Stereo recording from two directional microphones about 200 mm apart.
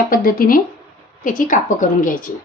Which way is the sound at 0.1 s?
45° left (ahead or behind).